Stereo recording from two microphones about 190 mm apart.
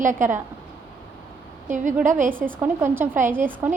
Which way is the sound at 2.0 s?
45° right (ahead or behind).